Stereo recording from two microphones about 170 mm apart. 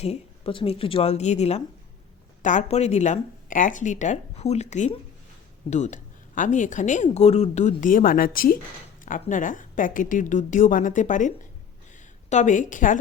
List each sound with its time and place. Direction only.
0.0 s a woman's voice: 35° left (ahead or behind)
12.3 s speech: 45° left (ahead or behind)